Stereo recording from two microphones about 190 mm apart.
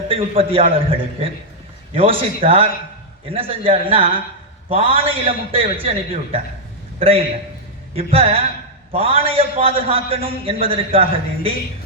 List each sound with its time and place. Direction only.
0.1 s a man's voice: 30° right (ahead or behind)
7.9 s a man's voice: 30° right (ahead or behind)